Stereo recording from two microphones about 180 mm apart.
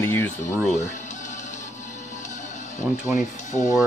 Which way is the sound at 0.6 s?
40° left (ahead or behind).